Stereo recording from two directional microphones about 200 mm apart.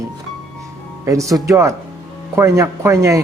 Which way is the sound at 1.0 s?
15° right (ahead or behind).